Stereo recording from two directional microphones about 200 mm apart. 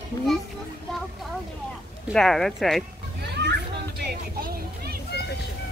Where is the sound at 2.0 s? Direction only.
Centre (ahead or behind).